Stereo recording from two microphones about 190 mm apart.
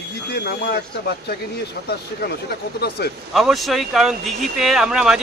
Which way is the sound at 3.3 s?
Centre (ahead or behind).